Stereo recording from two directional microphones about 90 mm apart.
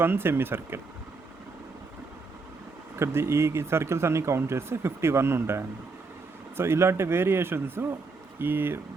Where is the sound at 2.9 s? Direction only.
30° right (ahead or behind).